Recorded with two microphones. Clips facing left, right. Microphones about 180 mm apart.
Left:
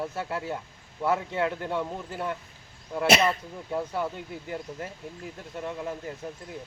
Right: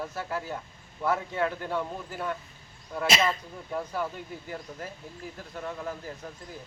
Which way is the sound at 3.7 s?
20° left (ahead or behind).